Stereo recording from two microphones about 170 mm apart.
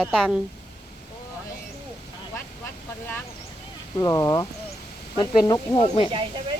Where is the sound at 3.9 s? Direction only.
20° left (ahead or behind).